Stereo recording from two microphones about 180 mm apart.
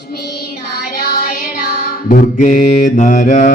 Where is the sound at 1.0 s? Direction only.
55° left (ahead or behind).